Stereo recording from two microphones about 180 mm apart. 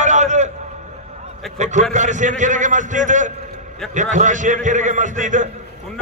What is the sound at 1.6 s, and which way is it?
A man's voice, 40° right (ahead or behind).